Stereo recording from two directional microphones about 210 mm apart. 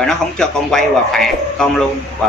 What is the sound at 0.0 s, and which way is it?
A man's voice, 5° left (ahead or behind).